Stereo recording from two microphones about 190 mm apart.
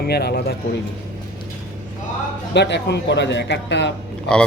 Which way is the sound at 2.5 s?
65° left (ahead or behind).